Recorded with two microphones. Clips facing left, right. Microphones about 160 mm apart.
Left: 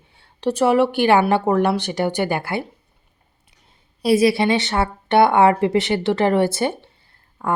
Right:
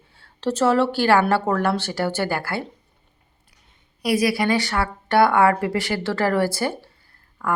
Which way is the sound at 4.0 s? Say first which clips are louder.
Left 5 dB; 25° left (ahead or behind).